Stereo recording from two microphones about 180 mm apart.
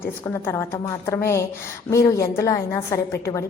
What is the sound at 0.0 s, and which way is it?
A woman's voice, 15° left (ahead or behind).